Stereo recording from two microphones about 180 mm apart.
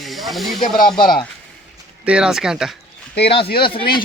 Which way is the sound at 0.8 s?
55° left (ahead or behind).